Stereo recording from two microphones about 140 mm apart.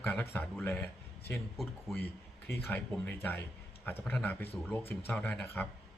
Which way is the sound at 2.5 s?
15° left (ahead or behind).